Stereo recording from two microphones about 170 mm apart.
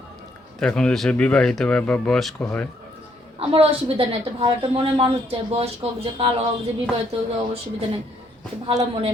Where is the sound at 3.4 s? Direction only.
35° right (ahead or behind).